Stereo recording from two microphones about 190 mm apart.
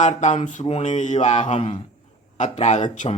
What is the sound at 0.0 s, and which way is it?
Mantra, 40° left (ahead or behind).